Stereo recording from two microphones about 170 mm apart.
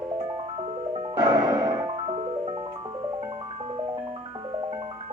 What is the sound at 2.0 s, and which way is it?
Music, 40° right (ahead or behind).